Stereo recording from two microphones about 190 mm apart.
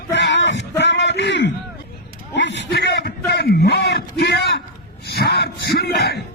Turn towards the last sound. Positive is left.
turn(degrees=55)  # may be behind; listen again after turning